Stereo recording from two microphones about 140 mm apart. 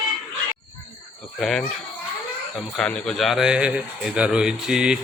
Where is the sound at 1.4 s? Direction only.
5° left (ahead or behind).